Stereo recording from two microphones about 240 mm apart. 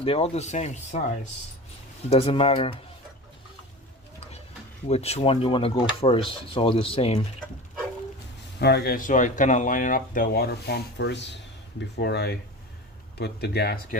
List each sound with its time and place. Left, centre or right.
0.0 s speech: left
4.9 s speech: left
8.5 s speech: left